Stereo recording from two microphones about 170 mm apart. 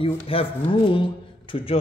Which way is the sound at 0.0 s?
35° left (ahead or behind).